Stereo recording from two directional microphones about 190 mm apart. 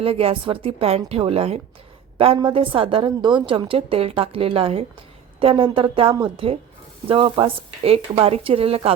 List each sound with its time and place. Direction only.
0.0 s a woman's voice: 30° right (ahead or behind)